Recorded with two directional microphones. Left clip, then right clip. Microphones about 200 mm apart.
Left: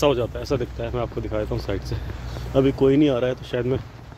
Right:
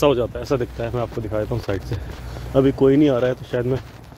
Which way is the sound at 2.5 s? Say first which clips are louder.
Right 2 dB; 20° right (ahead or behind).